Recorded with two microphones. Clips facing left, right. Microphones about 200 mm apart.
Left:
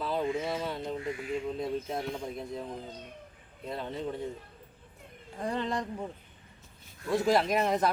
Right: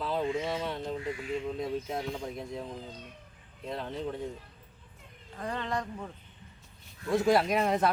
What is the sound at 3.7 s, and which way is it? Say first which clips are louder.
Speech: even; centre (ahead or behind).